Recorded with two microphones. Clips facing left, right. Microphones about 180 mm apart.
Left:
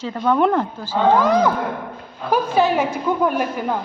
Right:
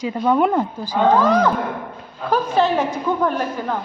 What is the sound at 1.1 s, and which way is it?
A woman's voice, 10° left (ahead or behind).